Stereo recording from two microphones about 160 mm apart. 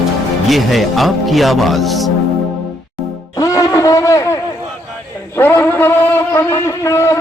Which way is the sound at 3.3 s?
20° left (ahead or behind).